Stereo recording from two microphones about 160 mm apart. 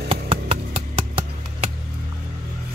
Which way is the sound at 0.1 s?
35° right (ahead or behind).